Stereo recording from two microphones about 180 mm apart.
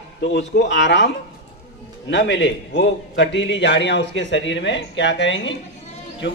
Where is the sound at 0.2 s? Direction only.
80° left.